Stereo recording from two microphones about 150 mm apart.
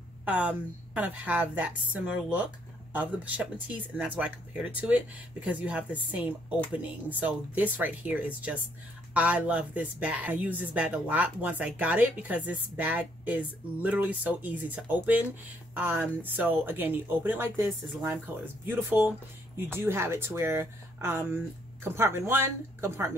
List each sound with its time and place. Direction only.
0.2 s speech: 10° right (ahead or behind)